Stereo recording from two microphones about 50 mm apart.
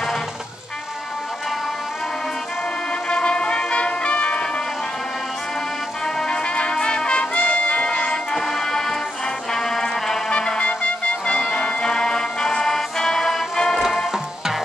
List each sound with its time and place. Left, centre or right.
2.9 s music: centre
6.0 s music: centre
8.4 s music: centre
14.1 s music: centre